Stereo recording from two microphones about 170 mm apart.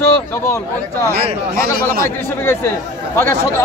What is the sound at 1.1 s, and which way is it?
Speech, 60° right (ahead or behind).